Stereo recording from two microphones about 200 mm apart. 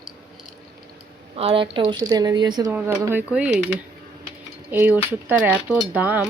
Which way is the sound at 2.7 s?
10° right (ahead or behind).